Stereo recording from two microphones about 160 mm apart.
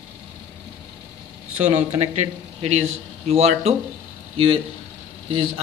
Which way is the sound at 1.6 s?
40° right (ahead or behind).